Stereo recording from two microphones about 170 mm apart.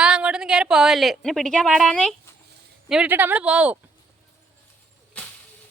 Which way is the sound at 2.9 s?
10° right (ahead or behind).